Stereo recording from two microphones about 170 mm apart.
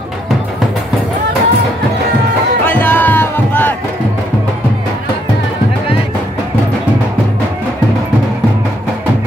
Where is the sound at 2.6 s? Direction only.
10° left (ahead or behind).